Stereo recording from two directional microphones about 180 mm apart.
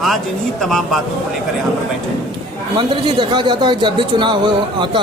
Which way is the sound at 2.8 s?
25° right (ahead or behind).